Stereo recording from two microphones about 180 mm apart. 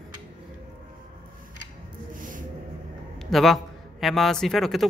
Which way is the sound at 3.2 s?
Centre (ahead or behind).